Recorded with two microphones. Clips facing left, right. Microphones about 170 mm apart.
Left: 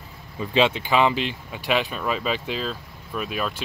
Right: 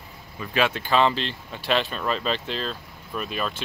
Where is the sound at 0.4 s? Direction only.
20° left (ahead or behind).